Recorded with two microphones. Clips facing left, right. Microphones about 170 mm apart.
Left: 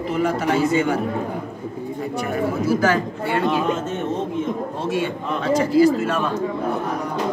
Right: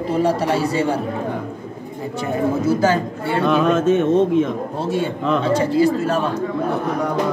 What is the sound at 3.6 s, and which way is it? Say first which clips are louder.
Speech: right 7 dB; 90° right.